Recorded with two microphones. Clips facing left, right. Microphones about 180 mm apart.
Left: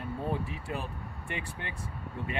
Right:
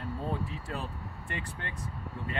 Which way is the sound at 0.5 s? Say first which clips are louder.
Left 1 dB; 15° left (ahead or behind).